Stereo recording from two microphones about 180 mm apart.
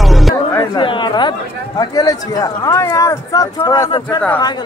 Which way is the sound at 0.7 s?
25° left (ahead or behind).